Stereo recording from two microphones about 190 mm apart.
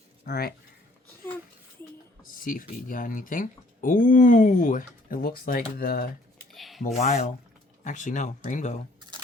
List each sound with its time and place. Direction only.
0.3 s speech: 55° left (ahead or behind)
2.3 s speech: 45° left (ahead or behind)
6.5 s a sound: centre (ahead or behind)
6.8 s speech: 40° left (ahead or behind)